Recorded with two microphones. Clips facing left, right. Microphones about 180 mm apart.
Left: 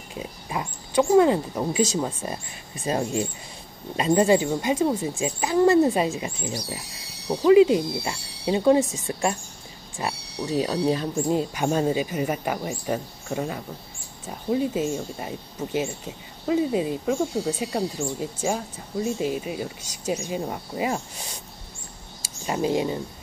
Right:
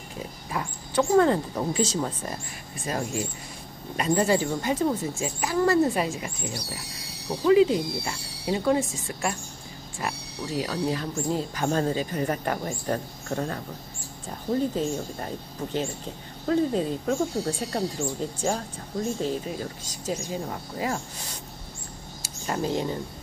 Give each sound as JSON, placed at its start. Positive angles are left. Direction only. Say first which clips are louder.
{"t": 0.5, "sound": "speech", "louder": "even", "side_deg": 15}
{"t": 2.8, "sound": "speech", "louder": "left 4 dB", "side_deg": 25}
{"t": 10.4, "sound": "speech", "louder": "left 5 dB", "side_deg": 20}
{"t": 22.5, "sound": "speech", "louder": "left 3 dB", "side_deg": 15}